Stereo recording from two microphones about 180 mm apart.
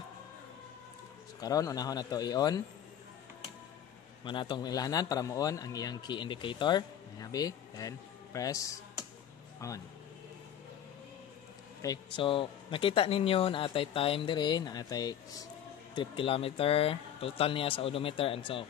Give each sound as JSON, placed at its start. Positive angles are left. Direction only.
{"t": 1.4, "sound": "a man's voice", "side_deg": 20}
{"t": 4.2, "sound": "a man's voice", "side_deg": 25}
{"t": 11.8, "sound": "a man's voice", "side_deg": 25}